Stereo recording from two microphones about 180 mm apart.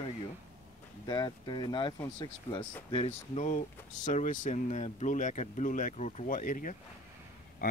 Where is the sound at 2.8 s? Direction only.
35° left (ahead or behind).